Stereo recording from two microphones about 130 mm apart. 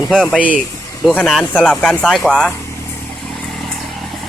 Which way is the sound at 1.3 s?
Centre (ahead or behind).